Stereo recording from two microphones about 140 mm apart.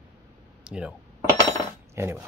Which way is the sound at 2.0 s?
20° right (ahead or behind).